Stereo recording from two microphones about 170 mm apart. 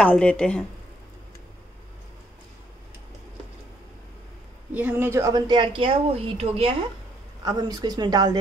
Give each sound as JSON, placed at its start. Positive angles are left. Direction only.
{"t": 0.0, "sound": "speech", "side_deg": 5}
{"t": 4.7, "sound": "a woman's voice", "side_deg": -10}
{"t": 7.4, "sound": "a woman's voice", "side_deg": -20}